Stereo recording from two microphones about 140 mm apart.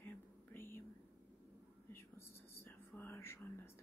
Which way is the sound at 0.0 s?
15° left (ahead or behind).